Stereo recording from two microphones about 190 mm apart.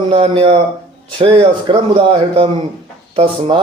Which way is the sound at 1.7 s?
25° right (ahead or behind).